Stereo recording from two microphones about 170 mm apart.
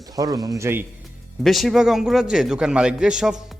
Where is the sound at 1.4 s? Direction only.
Centre (ahead or behind).